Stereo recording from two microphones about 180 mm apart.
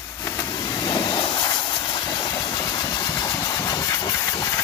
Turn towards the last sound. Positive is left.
turn(degrees=20)  # may be behind; listen again after turning